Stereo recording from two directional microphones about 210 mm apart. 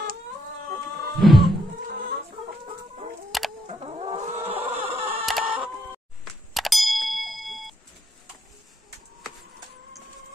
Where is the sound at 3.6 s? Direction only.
30° right (ahead or behind).